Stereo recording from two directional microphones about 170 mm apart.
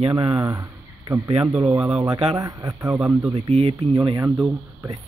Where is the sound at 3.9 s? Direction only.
20° right (ahead or behind).